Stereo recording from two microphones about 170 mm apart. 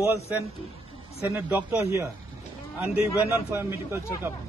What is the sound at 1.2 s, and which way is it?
A man's voice, 10° right (ahead or behind).